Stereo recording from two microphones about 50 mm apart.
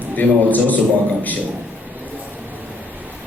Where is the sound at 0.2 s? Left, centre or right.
Left.